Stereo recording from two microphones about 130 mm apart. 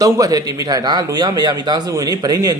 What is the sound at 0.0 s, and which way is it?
Speech, 30° right (ahead or behind).